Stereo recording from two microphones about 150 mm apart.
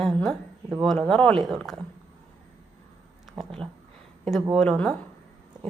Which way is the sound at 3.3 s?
5° left (ahead or behind).